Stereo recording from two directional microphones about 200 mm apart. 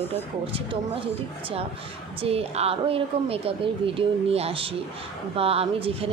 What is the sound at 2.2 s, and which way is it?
Speech, 30° right (ahead or behind).